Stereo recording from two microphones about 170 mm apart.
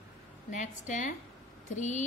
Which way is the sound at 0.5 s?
45° left (ahead or behind).